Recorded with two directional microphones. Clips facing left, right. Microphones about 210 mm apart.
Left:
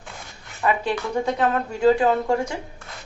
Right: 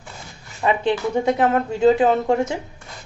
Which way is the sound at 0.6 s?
20° right (ahead or behind).